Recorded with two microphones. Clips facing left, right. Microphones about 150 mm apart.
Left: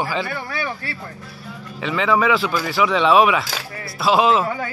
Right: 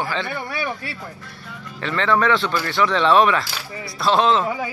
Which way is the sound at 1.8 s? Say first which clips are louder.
Left 1 dB; 5° left (ahead or behind).